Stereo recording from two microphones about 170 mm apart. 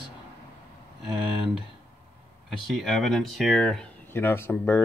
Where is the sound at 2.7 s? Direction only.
Centre (ahead or behind).